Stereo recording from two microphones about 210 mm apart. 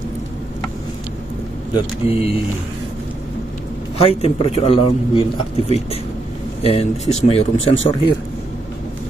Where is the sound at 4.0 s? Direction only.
30° left (ahead or behind).